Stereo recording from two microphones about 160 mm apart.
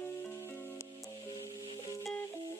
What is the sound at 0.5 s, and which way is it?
Music, 15° left (ahead or behind).